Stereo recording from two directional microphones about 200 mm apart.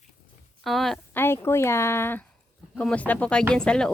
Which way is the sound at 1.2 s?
10° left (ahead or behind).